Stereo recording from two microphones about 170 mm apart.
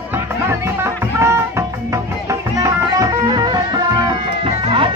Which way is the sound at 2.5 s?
20° right (ahead or behind).